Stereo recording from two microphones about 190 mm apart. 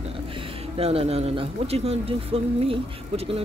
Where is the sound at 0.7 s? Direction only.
30° right (ahead or behind).